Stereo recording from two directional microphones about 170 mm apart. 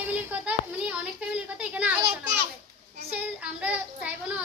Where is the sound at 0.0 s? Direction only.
10° right (ahead or behind).